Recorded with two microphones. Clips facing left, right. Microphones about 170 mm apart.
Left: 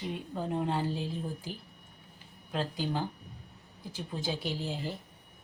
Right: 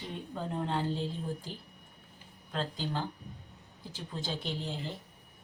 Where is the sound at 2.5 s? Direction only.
10° left (ahead or behind).